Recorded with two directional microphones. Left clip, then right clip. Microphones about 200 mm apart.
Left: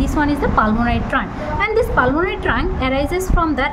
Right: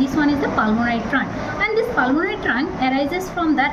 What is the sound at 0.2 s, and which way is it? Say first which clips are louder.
A woman's voice: left 4 dB; 45° left (ahead or behind).